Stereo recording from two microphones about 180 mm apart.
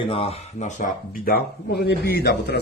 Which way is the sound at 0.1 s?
35° left (ahead or behind).